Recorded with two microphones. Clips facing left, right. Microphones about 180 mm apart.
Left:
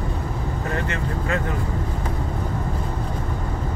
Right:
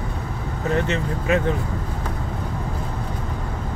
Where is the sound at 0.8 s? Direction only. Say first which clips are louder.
Right 3 dB; 20° right (ahead or behind).